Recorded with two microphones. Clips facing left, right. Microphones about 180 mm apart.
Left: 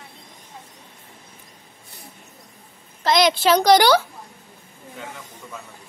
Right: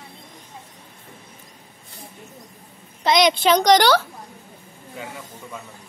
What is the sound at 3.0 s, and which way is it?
A woman's voice, 5° left (ahead or behind).